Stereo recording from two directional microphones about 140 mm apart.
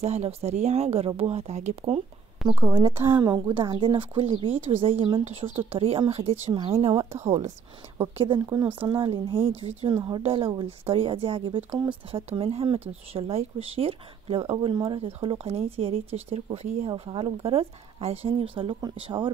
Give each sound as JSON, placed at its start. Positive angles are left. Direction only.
{"t": 0.0, "sound": "speech", "side_deg": -50}
{"t": 2.4, "sound": "a woman's voice", "side_deg": -40}
{"t": 3.1, "sound": "a woman's voice", "side_deg": -25}
{"t": 8.8, "sound": "a woman's voice", "side_deg": -40}
{"t": 10.0, "sound": "a woman's voice", "side_deg": -35}